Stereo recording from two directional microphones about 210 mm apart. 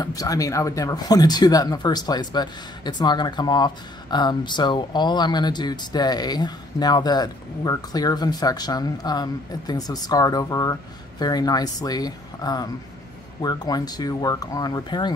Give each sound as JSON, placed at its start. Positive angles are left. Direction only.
{"t": 0.0, "sound": "speech", "side_deg": 15}